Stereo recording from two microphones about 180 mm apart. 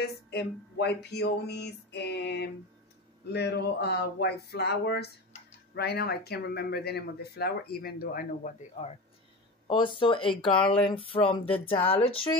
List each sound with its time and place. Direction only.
0.0 s speech: 65° left (ahead or behind)
9.7 s speech: 25° left (ahead or behind)